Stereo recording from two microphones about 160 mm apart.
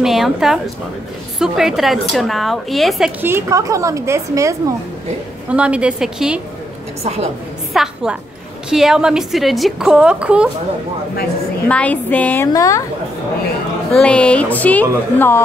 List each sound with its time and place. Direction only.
0.0 s a woman's voice: centre (ahead or behind)
3.2 s speech: 15° right (ahead or behind)
5.5 s a woman's voice: 5° right (ahead or behind)
7.0 s a woman's voice: 40° right (ahead or behind)
7.7 s a woman's voice: 5° right (ahead or behind)
11.6 s a woman's voice: 10° left (ahead or behind)
12.5 s a woman's voice: 20° left (ahead or behind)
13.9 s a woman's voice: 5° left (ahead or behind)